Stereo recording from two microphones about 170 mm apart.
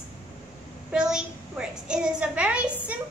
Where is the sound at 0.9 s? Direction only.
5° right (ahead or behind).